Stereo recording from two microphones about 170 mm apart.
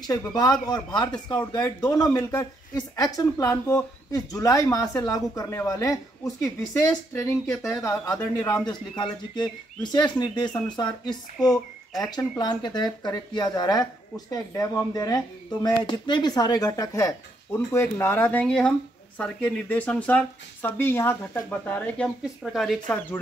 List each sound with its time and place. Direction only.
0.0 s speech: 20° left (ahead or behind); by 22.9 s centre (ahead or behind)